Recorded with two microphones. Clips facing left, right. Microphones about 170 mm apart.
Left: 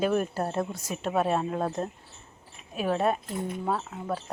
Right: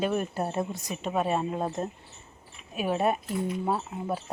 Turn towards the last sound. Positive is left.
turn(degrees=-15)  # may be behind; listen again after turning